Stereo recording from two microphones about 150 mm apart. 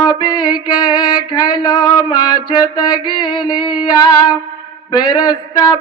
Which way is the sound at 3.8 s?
25° left (ahead or behind).